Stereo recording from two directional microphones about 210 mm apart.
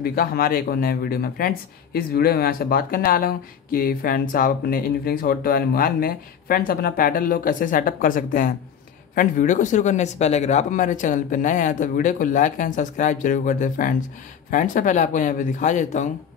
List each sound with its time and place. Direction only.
0.0 s speech: 45° left (ahead or behind)